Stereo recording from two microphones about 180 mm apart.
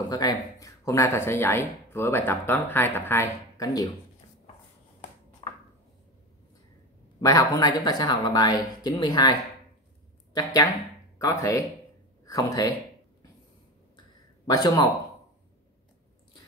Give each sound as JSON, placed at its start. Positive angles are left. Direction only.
{"t": 0.1, "sound": "speech", "side_deg": 20}
{"t": 5.4, "sound": "a sound", "side_deg": 20}
{"t": 7.2, "sound": "speech", "side_deg": 20}
{"t": 10.3, "sound": "speech", "side_deg": 20}
{"t": 14.4, "sound": "speech", "side_deg": 20}